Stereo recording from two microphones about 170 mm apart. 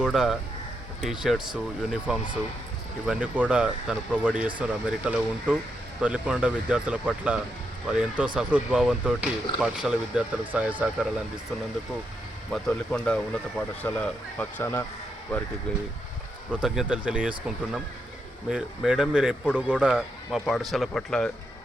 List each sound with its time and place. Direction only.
0.0 s speech: centre (ahead or behind)
12.5 s speech: 5° left (ahead or behind)
16.5 s speech: 5° right (ahead or behind)